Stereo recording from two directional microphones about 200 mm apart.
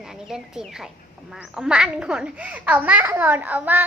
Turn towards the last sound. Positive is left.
turn(degrees=-10)  # may be behind; listen again after turning